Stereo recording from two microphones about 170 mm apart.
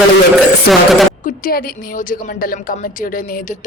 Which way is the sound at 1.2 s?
55° left (ahead or behind).